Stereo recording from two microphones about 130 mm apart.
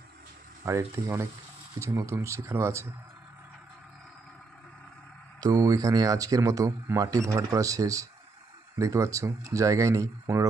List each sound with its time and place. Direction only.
0.7 s speech: 25° right (ahead or behind)
5.4 s speech: 30° right (ahead or behind)